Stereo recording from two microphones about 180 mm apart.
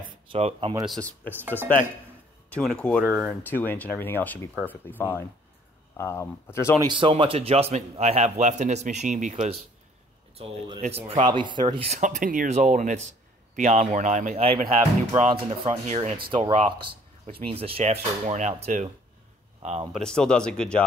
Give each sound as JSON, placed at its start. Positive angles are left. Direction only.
{"t": 0.3, "sound": "speech", "side_deg": -35}
{"t": 0.8, "sound": "speech", "side_deg": 5}
{"t": 2.5, "sound": "speech", "side_deg": 5}
{"t": 3.4, "sound": "speech", "side_deg": 10}
{"t": 6.8, "sound": "speech", "side_deg": -25}
{"t": 10.3, "sound": "speech", "side_deg": -30}
{"t": 12.0, "sound": "speech", "side_deg": -45}
{"t": 19.9, "sound": "speech", "side_deg": 5}